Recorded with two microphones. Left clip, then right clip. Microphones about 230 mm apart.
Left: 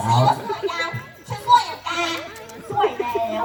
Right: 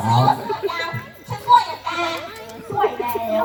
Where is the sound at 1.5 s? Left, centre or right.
Left.